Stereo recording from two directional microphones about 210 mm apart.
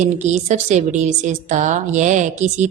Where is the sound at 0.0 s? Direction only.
35° right (ahead or behind).